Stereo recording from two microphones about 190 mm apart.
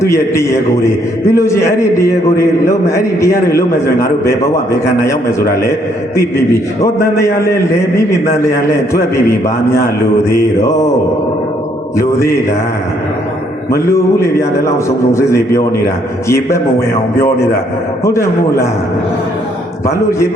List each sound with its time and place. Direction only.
0.0 s a man's voice: 15° left (ahead or behind)
6.8 s a man's voice: 15° left (ahead or behind)
10.3 s a man's voice: 15° left (ahead or behind)
13.8 s a man's voice: 15° left (ahead or behind)
18.0 s a man's voice: 15° left (ahead or behind)
20.1 s a man's voice: 15° left (ahead or behind)